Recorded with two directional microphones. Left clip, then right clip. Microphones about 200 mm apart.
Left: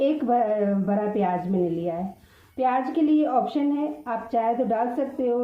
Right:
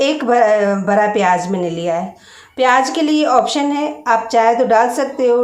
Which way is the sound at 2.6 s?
15° right (ahead or behind).